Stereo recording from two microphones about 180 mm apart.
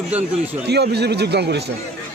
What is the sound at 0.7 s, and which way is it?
Speech, 65° right (ahead or behind).